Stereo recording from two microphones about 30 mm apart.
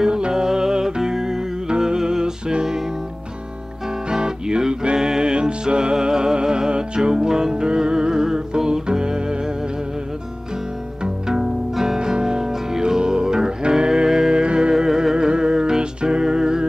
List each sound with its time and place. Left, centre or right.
0.0 s music: right
4.1 s music: right
12.0 s music: right
14.3 s music: right
14.7 s music: right